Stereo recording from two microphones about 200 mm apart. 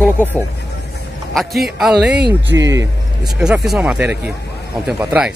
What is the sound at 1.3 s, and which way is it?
Speech, centre (ahead or behind).